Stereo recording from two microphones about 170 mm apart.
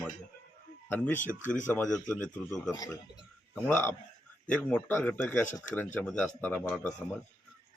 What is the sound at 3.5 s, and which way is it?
Speech, 10° left (ahead or behind).